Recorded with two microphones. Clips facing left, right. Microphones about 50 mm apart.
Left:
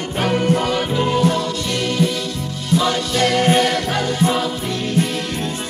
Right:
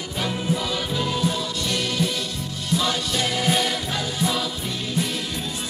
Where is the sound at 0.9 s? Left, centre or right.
Left.